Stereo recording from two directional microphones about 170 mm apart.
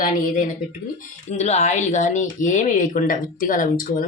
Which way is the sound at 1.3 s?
40° left (ahead or behind).